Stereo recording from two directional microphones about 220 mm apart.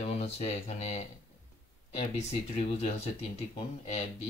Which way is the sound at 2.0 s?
30° left (ahead or behind).